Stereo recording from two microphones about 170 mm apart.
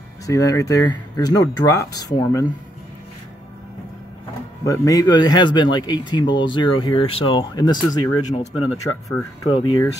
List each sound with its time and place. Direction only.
0.3 s speech: 20° left (ahead or behind)
4.6 s speech: 20° left (ahead or behind)
8.3 s speech: 45° left (ahead or behind)
9.4 s speech: 25° left (ahead or behind)